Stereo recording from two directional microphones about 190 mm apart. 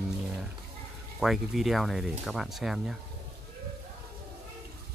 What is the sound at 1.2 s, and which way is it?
Speech, centre (ahead or behind).